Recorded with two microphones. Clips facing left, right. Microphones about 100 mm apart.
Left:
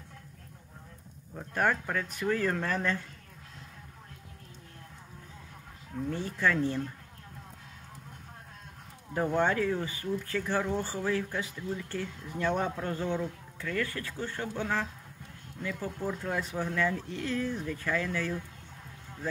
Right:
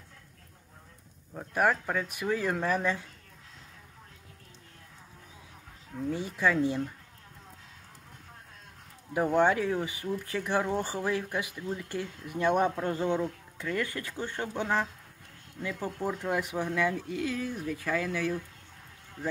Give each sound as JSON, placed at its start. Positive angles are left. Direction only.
{"t": 1.3, "sound": "speech", "side_deg": -10}
{"t": 6.1, "sound": "speech", "side_deg": -10}
{"t": 9.1, "sound": "speech", "side_deg": -15}